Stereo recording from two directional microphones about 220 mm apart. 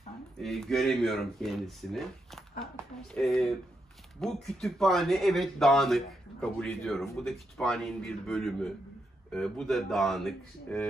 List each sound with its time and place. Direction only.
0.4 s speech: centre (ahead or behind)